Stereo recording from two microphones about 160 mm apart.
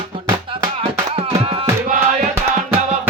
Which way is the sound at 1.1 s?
35° right (ahead or behind).